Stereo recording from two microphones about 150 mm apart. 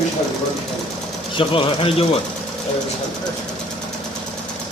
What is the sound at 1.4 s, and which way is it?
Speech, 35° left (ahead or behind).